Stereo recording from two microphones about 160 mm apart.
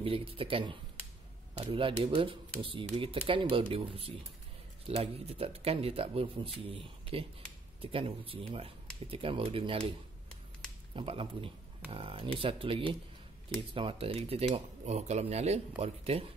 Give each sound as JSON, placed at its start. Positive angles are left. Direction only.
{"t": 0.0, "sound": "speech", "side_deg": -35}
{"t": 11.0, "sound": "speech", "side_deg": -35}